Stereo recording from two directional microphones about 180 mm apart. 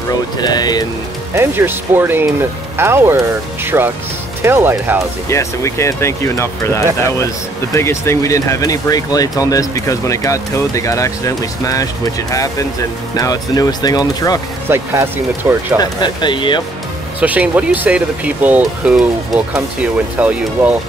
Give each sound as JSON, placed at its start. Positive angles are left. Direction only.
{"t": 0.4, "sound": "speech", "side_deg": 20}
{"t": 1.3, "sound": "speech", "side_deg": -15}
{"t": 5.3, "sound": "speech", "side_deg": 15}
{"t": 14.7, "sound": "speech", "side_deg": -10}
{"t": 15.8, "sound": "speech", "side_deg": 25}
{"t": 17.2, "sound": "speech", "side_deg": -10}